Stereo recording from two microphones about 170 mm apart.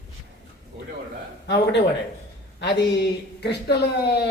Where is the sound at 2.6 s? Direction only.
85° left.